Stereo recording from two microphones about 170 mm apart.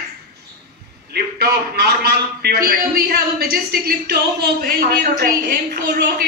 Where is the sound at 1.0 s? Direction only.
65° right (ahead or behind).